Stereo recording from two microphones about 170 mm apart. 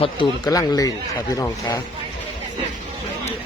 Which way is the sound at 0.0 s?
25° left (ahead or behind).